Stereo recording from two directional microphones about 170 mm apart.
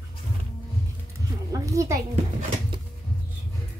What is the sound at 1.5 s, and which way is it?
Speech, 20° right (ahead or behind).